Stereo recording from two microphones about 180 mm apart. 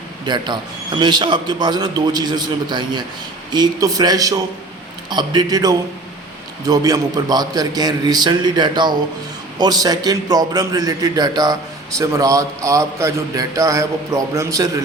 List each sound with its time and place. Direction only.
0.3 s a man's voice: 25° right (ahead or behind)